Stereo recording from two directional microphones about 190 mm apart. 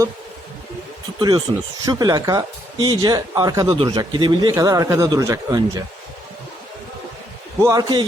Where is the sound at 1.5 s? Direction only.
25° right (ahead or behind).